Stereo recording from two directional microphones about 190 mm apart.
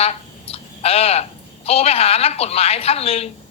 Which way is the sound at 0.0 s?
30° left (ahead or behind).